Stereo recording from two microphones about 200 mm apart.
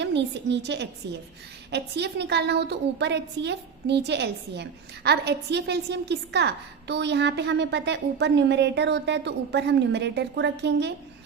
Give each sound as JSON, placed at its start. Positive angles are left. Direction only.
{"t": 0.0, "sound": "a woman's voice", "side_deg": -60}